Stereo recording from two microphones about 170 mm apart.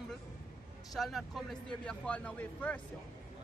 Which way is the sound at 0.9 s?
Centre (ahead or behind).